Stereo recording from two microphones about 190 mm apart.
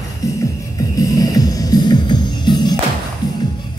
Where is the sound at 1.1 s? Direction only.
20° left (ahead or behind).